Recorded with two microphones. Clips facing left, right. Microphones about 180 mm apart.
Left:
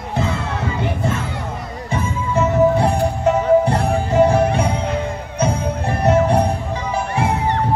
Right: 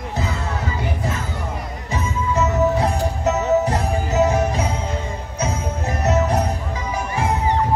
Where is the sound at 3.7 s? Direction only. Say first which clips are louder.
Left 4 dB; 60° left (ahead or behind).